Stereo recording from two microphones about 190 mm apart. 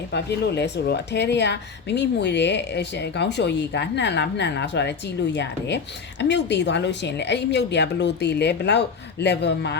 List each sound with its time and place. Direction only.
0.1 s speech: 60° left (ahead or behind)